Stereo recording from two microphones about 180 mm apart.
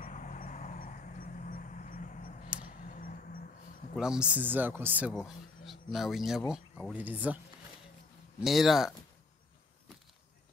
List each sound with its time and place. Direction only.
0.0 s vehicle: 45° left (ahead or behind)
3.9 s speech: 5° right (ahead or behind)
8.4 s speech: centre (ahead or behind)